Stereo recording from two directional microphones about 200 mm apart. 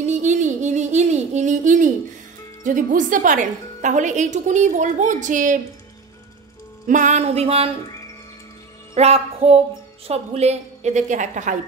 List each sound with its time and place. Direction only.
0.0 s music: 35° right (ahead or behind)
2.6 s a woman's voice: 40° right (ahead or behind)
6.9 s a woman's voice: 35° right (ahead or behind)
8.9 s music: 30° right (ahead or behind)
10.0 s a woman's voice: 30° right (ahead or behind)